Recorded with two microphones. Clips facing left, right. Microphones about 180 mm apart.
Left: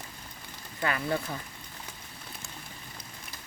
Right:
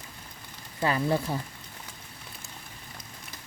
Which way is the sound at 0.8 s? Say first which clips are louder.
Right 4 dB; 30° right (ahead or behind).